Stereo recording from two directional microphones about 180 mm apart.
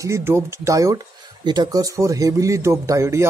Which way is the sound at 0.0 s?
15° right (ahead or behind).